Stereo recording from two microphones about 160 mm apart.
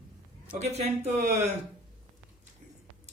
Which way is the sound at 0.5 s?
45° right (ahead or behind).